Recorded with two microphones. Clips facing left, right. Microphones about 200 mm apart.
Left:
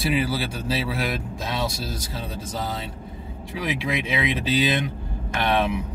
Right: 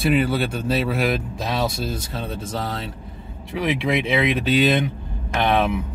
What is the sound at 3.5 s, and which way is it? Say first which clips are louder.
Speech: right 5 dB; 60° right (ahead or behind).